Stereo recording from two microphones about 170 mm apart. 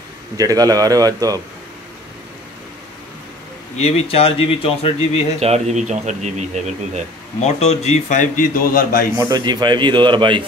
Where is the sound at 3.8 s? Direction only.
35° left (ahead or behind).